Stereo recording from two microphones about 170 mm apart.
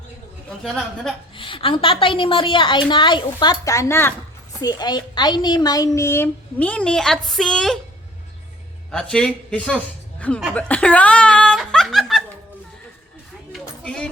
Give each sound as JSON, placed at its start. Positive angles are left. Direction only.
{"t": 0.6, "sound": "a man's voice", "side_deg": 0}
{"t": 1.4, "sound": "a woman's voice", "side_deg": 30}
{"t": 8.9, "sound": "a man's voice", "side_deg": 5}
{"t": 10.5, "sound": "snicker", "side_deg": 5}
{"t": 13.5, "sound": "a sound", "side_deg": 5}